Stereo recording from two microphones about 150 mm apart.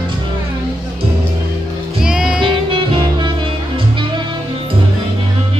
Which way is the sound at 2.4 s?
35° right (ahead or behind).